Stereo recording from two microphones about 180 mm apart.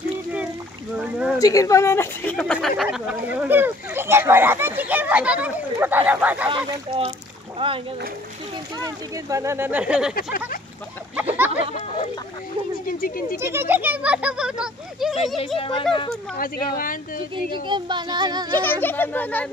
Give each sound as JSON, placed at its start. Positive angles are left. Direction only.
{"t": 0.9, "sound": "speech", "side_deg": -10}
{"t": 1.4, "sound": "speech", "side_deg": 20}
{"t": 6.5, "sound": "speech", "side_deg": -25}
{"t": 9.1, "sound": "speech", "side_deg": -15}
{"t": 11.1, "sound": "a sound", "side_deg": -10}
{"t": 12.7, "sound": "speech", "side_deg": 50}
{"t": 13.4, "sound": "speech", "side_deg": -15}
{"t": 15.3, "sound": "speech", "side_deg": 30}
{"t": 16.3, "sound": "speech", "side_deg": 50}
{"t": 17.6, "sound": "speech", "side_deg": -25}
{"t": 18.6, "sound": "a child's voice", "side_deg": 10}